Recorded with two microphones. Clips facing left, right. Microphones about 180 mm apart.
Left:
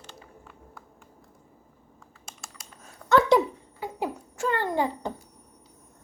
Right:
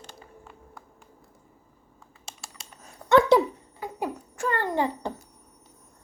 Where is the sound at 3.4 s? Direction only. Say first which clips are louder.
Right 1 dB; 5° left (ahead or behind).